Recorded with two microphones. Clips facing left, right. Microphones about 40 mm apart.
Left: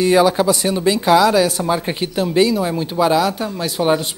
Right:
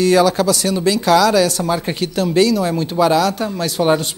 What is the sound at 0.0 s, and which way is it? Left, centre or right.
Speech, centre.